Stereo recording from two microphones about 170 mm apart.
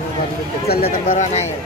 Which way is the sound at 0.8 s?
45° left (ahead or behind).